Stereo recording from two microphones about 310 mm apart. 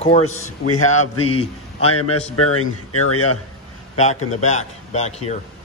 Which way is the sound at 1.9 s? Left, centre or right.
Left.